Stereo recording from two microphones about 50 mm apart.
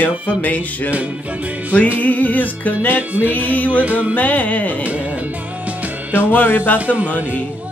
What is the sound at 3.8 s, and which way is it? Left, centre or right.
Music, right.